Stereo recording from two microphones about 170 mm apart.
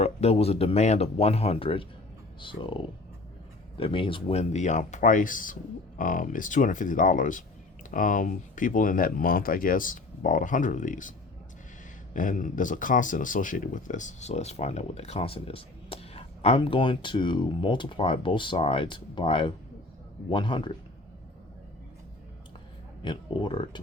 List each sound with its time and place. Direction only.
0.0 s speech: 35° left (ahead or behind)
12.1 s speech: 50° left (ahead or behind); by 20.7 s 30° left (ahead or behind)
23.0 s speech: 30° left (ahead or behind)